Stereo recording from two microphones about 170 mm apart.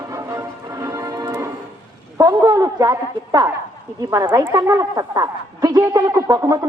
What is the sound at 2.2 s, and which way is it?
A woman's voice, 20° right (ahead or behind).